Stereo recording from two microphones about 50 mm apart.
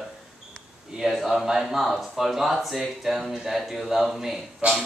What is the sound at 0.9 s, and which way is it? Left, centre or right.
Speech, centre.